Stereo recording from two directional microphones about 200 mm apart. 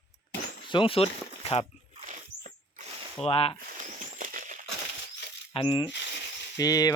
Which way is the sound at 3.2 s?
30° left (ahead or behind).